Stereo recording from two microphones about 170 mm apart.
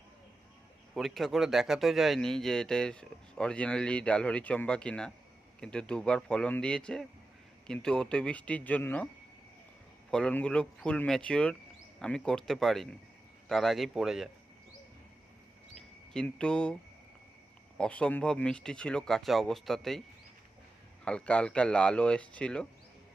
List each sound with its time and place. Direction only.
0.9 s speech: centre (ahead or behind)
10.1 s speech: 5° left (ahead or behind)
16.1 s speech: 5° left (ahead or behind)
17.7 s speech: 5° left (ahead or behind)
21.0 s speech: 5° left (ahead or behind)